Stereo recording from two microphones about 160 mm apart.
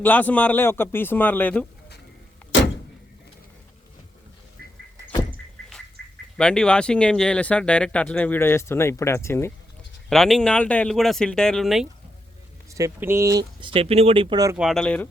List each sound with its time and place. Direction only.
0.0 s speech: 10° left (ahead or behind)
6.0 s duck: 90° right
6.3 s speech: 5° left (ahead or behind)
10.1 s speech: centre (ahead or behind)
12.7 s speech: 15° right (ahead or behind)
13.6 s speech: 35° right (ahead or behind)
14.6 s speech: centre (ahead or behind)